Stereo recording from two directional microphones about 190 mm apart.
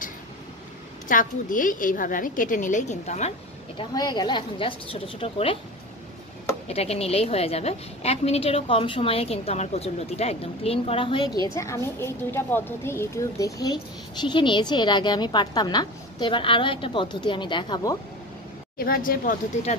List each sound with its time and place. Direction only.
1.0 s a woman's voice: 45° left (ahead or behind)
3.9 s a woman's voice: 20° left (ahead or behind)
6.7 s a woman's voice: 30° left (ahead or behind)
11.4 s a woman's voice: 15° left (ahead or behind)
18.8 s a woman's voice: 50° left (ahead or behind)